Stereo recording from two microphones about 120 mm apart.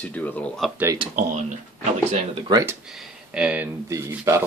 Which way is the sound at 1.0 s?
45° right (ahead or behind).